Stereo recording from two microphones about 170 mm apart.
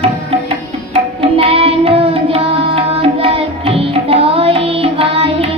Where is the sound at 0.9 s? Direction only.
35° right (ahead or behind).